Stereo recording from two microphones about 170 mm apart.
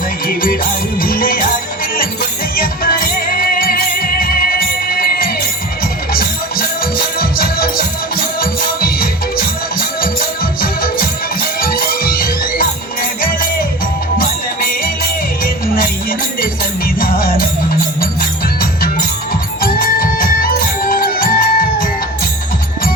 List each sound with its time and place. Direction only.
0.3 s music: 55° left (ahead or behind)
2.6 s music: 60° left (ahead or behind)
15.6 s music: 60° left (ahead or behind)
17.0 s music: 60° left (ahead or behind)